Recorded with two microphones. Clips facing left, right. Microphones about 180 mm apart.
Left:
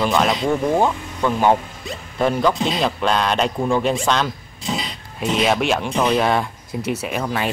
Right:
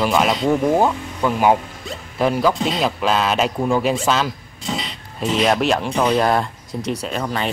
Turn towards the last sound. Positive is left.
turn(degrees=5)  # may be behind; listen again after turning